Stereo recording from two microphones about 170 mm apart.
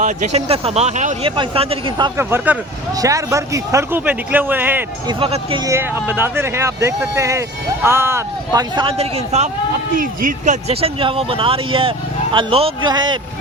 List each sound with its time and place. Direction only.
0.0 s speech: 40° right (ahead or behind)
1.4 s speech: 30° right (ahead or behind)
2.1 s speech: 10° right (ahead or behind)
5.0 s speech: 30° right (ahead or behind)
5.6 s speech: 15° right (ahead or behind)
8.7 s speech: 30° right (ahead or behind)
9.9 s speech: 55° right (ahead or behind); by 13.1 s 25° right (ahead or behind)